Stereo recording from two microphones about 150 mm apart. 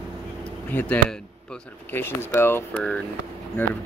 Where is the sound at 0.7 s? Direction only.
10° left (ahead or behind).